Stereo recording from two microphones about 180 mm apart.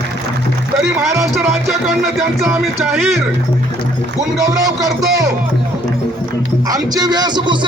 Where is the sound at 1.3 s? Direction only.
Centre (ahead or behind).